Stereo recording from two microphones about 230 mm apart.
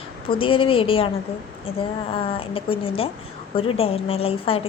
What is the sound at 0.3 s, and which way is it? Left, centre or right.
A woman's voice, left.